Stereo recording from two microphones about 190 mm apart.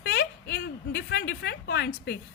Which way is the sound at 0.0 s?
60° left (ahead or behind).